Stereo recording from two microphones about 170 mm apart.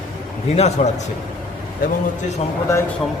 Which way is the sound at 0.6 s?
40° left (ahead or behind).